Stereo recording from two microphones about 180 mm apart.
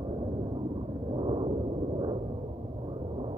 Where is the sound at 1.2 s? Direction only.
30° right (ahead or behind).